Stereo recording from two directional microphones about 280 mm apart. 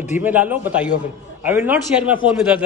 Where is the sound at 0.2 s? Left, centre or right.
Centre.